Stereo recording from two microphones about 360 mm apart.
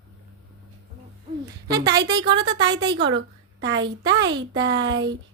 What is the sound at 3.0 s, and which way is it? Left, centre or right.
Speech, right.